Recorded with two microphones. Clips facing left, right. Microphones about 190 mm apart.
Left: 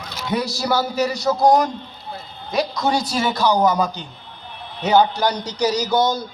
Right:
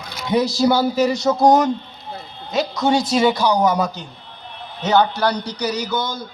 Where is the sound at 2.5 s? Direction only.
25° right (ahead or behind).